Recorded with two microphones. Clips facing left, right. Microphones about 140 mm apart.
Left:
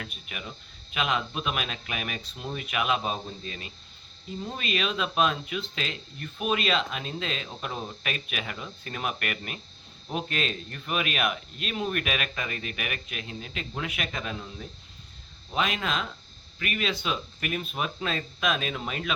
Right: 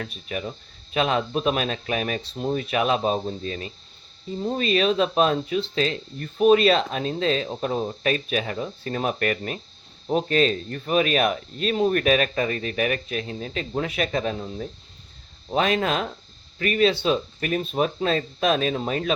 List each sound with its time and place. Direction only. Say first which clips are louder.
0.0 s speech: right 9 dB; 35° right (ahead or behind)